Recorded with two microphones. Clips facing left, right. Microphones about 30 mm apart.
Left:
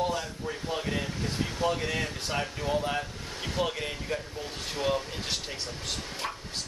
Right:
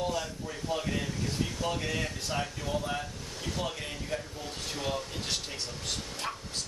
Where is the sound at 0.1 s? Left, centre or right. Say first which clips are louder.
Left 2 dB; left.